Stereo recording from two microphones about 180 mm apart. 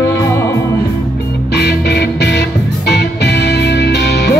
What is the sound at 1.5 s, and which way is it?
Music, 65° left (ahead or behind).